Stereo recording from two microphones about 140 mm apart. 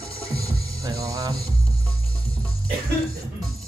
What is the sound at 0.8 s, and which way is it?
Music, 25° right (ahead or behind).